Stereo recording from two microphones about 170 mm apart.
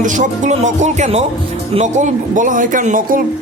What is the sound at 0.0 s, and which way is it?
A man's voice, 45° right (ahead or behind).